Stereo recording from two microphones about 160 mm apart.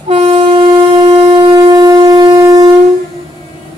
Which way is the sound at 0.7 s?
25° right (ahead or behind).